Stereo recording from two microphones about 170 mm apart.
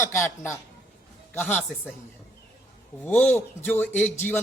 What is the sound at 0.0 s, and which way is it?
A man's voice, 15° left (ahead or behind).